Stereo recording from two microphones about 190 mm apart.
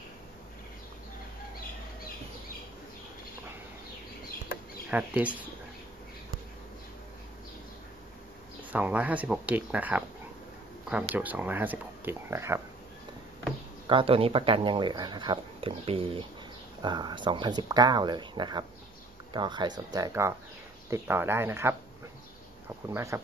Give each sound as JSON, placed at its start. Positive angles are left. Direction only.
{"t": 4.9, "sound": "speech", "side_deg": -5}
{"t": 8.7, "sound": "speech", "side_deg": -10}
{"t": 13.8, "sound": "speech", "side_deg": -30}
{"t": 22.9, "sound": "speech", "side_deg": -15}